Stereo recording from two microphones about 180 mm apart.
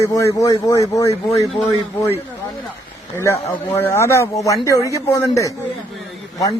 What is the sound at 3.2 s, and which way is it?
A man's voice, 15° left (ahead or behind).